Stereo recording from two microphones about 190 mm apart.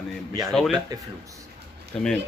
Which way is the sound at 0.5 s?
Centre (ahead or behind).